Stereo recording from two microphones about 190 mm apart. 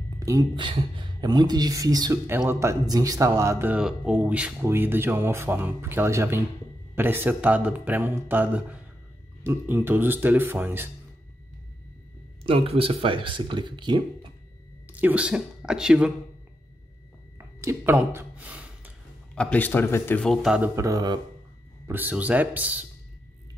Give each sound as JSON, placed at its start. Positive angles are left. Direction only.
{"t": 0.2, "sound": "speech", "side_deg": -15}
{"t": 12.4, "sound": "speech", "side_deg": -30}
{"t": 14.9, "sound": "speech", "side_deg": -10}
{"t": 17.4, "sound": "a sound", "side_deg": -15}
{"t": 19.3, "sound": "speech", "side_deg": 5}
{"t": 21.8, "sound": "speech", "side_deg": -10}